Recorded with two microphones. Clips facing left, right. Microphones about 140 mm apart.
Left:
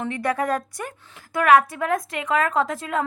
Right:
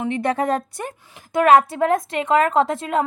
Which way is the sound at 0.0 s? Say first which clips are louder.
Right 3 dB; 25° right (ahead or behind).